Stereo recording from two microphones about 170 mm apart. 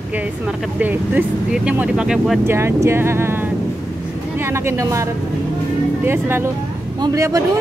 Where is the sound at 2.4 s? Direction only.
15° right (ahead or behind).